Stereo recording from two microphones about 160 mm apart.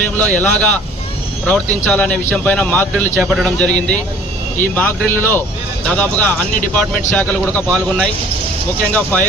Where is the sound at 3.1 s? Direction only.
Centre (ahead or behind).